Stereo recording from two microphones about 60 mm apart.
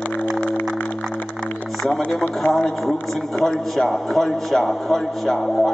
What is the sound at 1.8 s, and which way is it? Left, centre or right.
A man's voice, centre.